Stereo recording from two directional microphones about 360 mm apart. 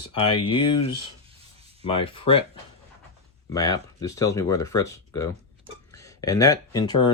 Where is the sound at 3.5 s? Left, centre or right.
Centre.